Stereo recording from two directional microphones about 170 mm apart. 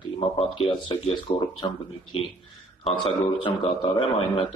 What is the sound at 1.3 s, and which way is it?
Speech, 20° left (ahead or behind).